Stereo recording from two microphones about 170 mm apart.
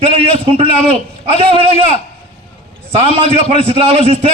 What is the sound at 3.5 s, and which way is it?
Speech, 35° right (ahead or behind).